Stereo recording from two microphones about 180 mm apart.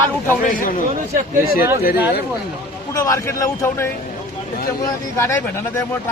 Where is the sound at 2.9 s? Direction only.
15° left (ahead or behind).